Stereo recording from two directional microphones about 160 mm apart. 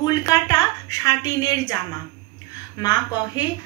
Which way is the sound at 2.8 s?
25° left (ahead or behind).